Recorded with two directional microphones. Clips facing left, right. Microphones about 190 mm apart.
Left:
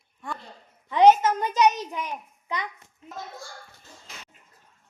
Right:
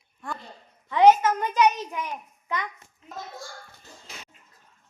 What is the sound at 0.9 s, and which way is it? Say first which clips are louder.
Speech: even; 20° left (ahead or behind).